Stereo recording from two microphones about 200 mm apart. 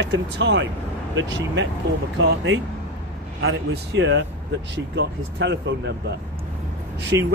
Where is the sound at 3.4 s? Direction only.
65° right (ahead or behind).